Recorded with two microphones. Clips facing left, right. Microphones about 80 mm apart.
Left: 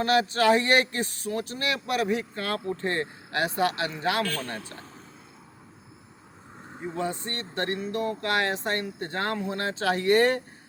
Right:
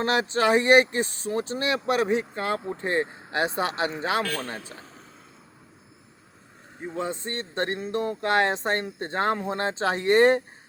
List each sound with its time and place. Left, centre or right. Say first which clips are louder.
0.0 s speech: left 1 dB; right
7.0 s speech: right 1 dB; right